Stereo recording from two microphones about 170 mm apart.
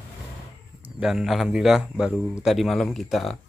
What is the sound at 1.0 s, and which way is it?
A man's voice, 5° right (ahead or behind).